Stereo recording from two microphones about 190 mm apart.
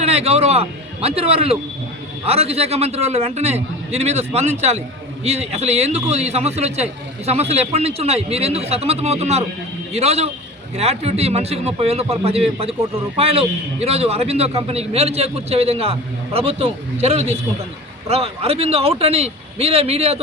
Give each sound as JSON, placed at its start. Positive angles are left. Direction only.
{"t": 0.0, "sound": "speech", "side_deg": -35}